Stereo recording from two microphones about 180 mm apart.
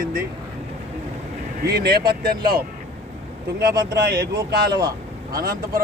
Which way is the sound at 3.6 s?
60° right (ahead or behind).